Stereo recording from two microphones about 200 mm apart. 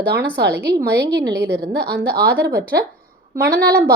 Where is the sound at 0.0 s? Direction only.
55° right (ahead or behind).